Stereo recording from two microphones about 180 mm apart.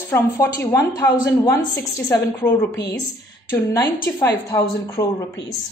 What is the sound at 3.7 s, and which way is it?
Speech, 15° left (ahead or behind).